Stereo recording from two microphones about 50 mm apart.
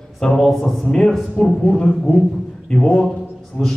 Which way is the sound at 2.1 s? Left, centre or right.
Left.